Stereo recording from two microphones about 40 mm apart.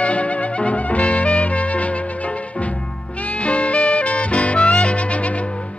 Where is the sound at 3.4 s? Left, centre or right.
Left.